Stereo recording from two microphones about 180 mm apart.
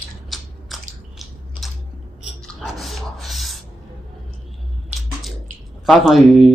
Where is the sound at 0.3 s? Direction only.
Centre (ahead or behind).